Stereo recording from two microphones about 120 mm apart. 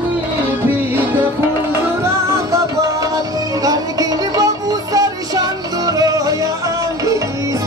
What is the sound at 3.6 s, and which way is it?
Music, 30° right (ahead or behind).